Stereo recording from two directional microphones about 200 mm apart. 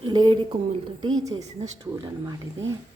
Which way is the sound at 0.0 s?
25° right (ahead or behind).